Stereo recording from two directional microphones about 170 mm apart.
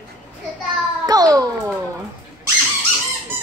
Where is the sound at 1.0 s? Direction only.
20° right (ahead or behind).